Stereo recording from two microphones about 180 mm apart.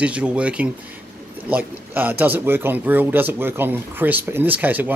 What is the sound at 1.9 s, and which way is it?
A man's voice, 10° right (ahead or behind).